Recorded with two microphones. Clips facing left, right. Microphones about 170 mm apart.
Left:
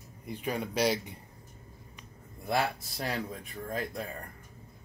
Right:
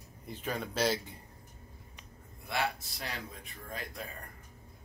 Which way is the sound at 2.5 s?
45° left (ahead or behind).